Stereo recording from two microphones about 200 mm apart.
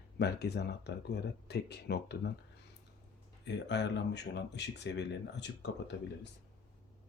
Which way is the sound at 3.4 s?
60° left (ahead or behind).